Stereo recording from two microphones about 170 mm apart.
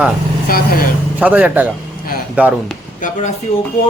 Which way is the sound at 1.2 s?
10° right (ahead or behind).